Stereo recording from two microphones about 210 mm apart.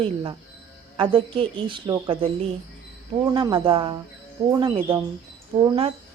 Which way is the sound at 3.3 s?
20° right (ahead or behind).